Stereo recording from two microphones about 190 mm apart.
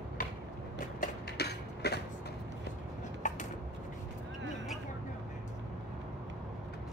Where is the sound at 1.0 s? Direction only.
60° left (ahead or behind).